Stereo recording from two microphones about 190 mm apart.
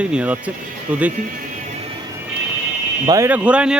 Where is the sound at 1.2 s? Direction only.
45° right (ahead or behind).